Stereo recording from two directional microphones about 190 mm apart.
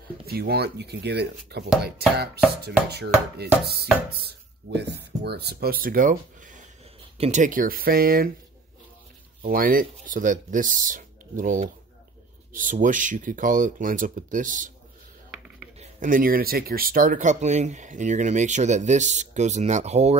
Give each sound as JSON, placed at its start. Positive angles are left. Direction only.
{"t": 0.3, "sound": "speech", "side_deg": -55}
{"t": 9.4, "sound": "speech", "side_deg": -50}
{"t": 15.8, "sound": "speech", "side_deg": -45}